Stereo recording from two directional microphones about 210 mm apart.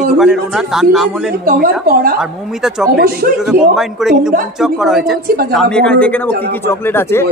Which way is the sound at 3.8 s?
Centre (ahead or behind).